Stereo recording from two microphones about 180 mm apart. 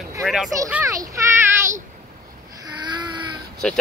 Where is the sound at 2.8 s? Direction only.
25° right (ahead or behind).